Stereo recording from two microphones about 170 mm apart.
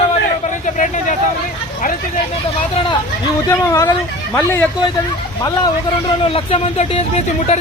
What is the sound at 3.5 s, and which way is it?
Speech, 15° left (ahead or behind).